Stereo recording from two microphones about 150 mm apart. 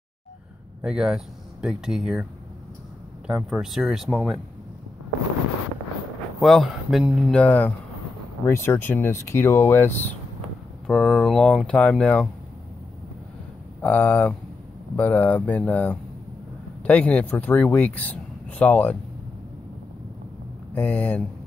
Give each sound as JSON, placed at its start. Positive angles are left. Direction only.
{"t": 0.8, "sound": "speech", "side_deg": -5}
{"t": 3.3, "sound": "speech", "side_deg": -5}
{"t": 6.4, "sound": "speech", "side_deg": 0}
{"t": 10.9, "sound": "speech", "side_deg": 0}
{"t": 13.7, "sound": "speech", "side_deg": 10}
{"t": 20.7, "sound": "speech", "side_deg": 10}